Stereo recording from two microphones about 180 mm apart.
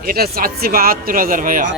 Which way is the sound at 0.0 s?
55° right (ahead or behind).